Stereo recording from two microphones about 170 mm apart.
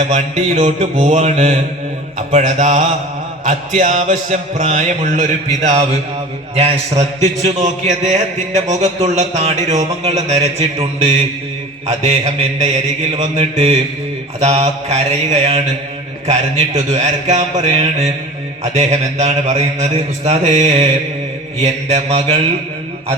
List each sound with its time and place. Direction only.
0.0 s music: 45° right (ahead or behind)
6.6 s speech: 40° right (ahead or behind)